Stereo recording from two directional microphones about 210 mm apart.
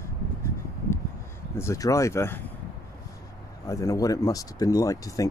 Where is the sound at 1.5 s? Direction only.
15° left (ahead or behind).